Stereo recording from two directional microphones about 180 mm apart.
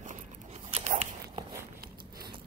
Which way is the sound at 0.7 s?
35° right (ahead or behind).